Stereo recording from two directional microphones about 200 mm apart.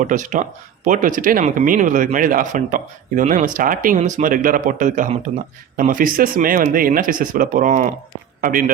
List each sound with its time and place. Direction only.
0.0 s speech: 40° right (ahead or behind)